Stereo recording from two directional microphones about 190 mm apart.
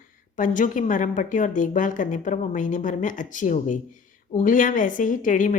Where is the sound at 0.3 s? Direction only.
45° left (ahead or behind).